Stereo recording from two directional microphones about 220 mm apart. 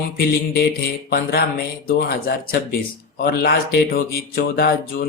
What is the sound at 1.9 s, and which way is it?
Speech, 45° left (ahead or behind).